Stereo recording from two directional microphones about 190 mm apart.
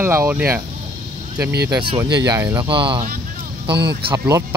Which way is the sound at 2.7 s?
25° right (ahead or behind).